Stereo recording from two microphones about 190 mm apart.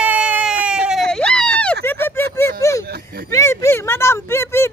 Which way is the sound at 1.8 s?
10° left (ahead or behind).